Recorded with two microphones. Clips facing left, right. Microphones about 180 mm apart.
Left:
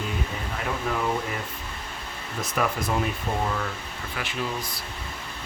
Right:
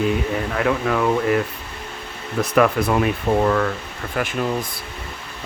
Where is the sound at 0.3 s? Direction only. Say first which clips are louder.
Right 10 dB; 80° right.